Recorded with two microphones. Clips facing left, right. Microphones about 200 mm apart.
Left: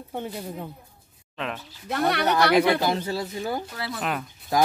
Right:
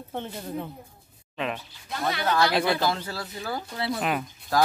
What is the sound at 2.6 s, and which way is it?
Speech, 20° left (ahead or behind).